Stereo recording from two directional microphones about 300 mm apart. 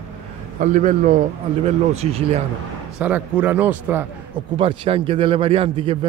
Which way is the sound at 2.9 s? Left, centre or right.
Centre.